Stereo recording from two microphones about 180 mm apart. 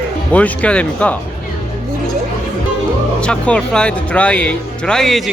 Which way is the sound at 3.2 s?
5° left (ahead or behind).